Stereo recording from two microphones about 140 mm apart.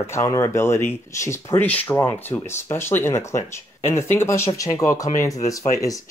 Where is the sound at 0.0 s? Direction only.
20° left (ahead or behind).